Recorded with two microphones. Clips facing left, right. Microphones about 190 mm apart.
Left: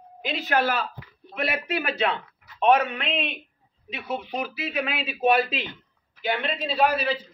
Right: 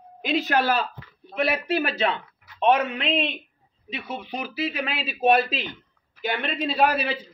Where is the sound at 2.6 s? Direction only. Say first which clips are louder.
Left 1 dB; 30° right (ahead or behind).